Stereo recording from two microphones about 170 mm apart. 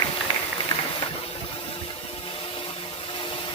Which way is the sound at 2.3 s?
30° left (ahead or behind).